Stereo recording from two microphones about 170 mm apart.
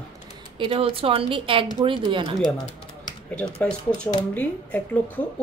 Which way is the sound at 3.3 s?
10° left (ahead or behind).